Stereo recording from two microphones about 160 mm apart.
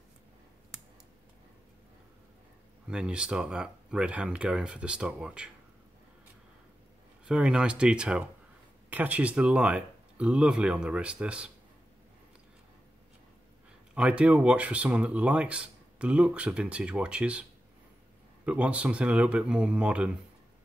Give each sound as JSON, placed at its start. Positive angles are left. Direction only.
{"t": 2.9, "sound": "speech", "side_deg": -5}
{"t": 7.2, "sound": "speech", "side_deg": -5}
{"t": 13.9, "sound": "speech", "side_deg": -5}